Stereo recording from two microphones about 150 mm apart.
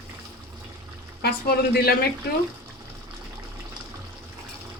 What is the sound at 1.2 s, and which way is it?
Speech, 90° left.